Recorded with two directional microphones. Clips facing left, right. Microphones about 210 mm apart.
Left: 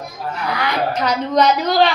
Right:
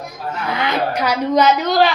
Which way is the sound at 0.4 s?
20° right (ahead or behind).